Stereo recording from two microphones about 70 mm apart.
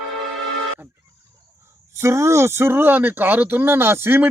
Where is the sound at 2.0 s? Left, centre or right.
Right.